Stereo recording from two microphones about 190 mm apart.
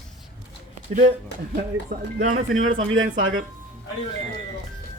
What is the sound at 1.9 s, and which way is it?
Speech, 45° right (ahead or behind).